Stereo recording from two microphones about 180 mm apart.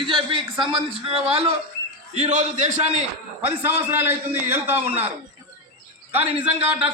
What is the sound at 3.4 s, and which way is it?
A man's voice, 10° right (ahead or behind).